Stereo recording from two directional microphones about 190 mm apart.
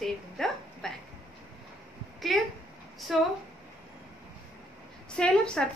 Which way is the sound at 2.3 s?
Centre (ahead or behind).